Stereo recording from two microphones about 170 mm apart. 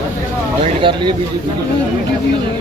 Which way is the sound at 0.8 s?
30° right (ahead or behind).